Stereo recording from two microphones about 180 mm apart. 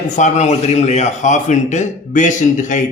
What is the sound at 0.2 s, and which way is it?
A man's voice, 40° left (ahead or behind).